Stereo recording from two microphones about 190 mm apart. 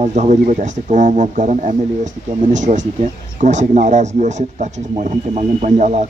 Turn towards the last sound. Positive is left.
turn(degrees=-35)  # may be behind; listen again after turning